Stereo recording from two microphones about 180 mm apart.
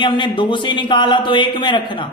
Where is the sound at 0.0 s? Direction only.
25° left (ahead or behind).